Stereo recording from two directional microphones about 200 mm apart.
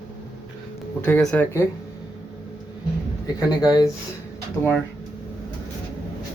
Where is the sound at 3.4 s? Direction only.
20° left (ahead or behind).